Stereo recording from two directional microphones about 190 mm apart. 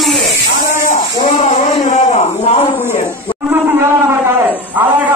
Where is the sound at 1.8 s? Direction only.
35° left (ahead or behind).